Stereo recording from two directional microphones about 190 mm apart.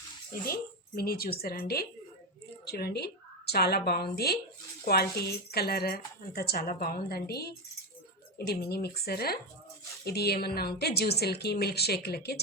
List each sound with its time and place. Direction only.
0.4 s a woman's voice: 50° left (ahead or behind)